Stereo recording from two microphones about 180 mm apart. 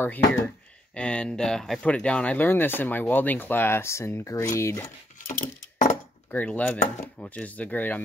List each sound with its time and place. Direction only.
0.0 s speech: 10° left (ahead or behind)
6.3 s speech: 10° left (ahead or behind)